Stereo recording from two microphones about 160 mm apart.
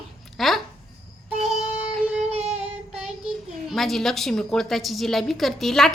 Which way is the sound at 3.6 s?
Centre (ahead or behind).